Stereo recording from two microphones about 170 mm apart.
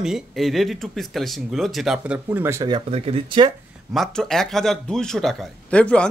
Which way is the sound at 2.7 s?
30° right (ahead or behind).